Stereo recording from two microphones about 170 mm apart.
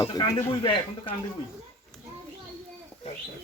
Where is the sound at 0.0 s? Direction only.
25° left (ahead or behind).